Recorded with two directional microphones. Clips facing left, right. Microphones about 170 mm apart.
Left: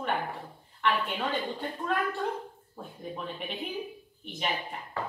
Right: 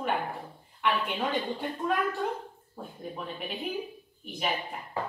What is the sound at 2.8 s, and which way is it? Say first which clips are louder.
Speech: even; centre (ahead or behind).